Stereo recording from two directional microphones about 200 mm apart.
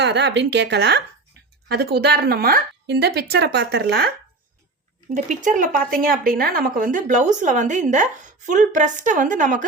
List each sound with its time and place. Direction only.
0.0 s speech: 60° right (ahead or behind)
5.1 s speech: 40° right (ahead or behind)